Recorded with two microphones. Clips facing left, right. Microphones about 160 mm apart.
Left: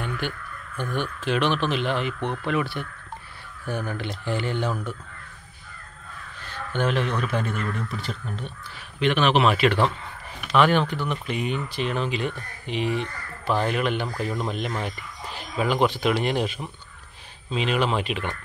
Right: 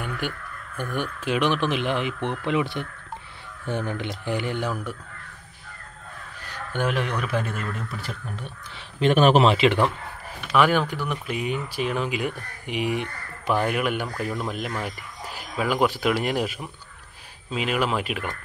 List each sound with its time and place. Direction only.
0.7 s speech: 10° right (ahead or behind)
6.4 s speech: 10° right (ahead or behind)
9.0 s speech: 40° right (ahead or behind)
9.5 s speech: 20° right (ahead or behind)